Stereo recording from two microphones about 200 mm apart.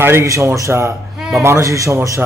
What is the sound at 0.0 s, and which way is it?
Speech, 15° right (ahead or behind).